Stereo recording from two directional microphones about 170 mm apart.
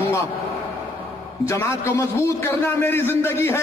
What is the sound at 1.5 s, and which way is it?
A man's voice, 15° left (ahead or behind).